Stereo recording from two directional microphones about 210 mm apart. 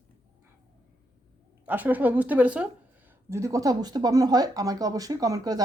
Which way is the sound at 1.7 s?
10° right (ahead or behind).